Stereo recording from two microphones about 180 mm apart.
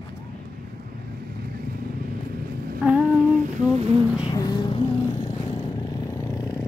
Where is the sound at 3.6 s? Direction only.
35° right (ahead or behind).